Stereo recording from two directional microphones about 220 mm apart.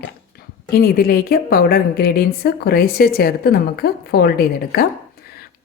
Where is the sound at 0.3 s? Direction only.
45° left (ahead or behind).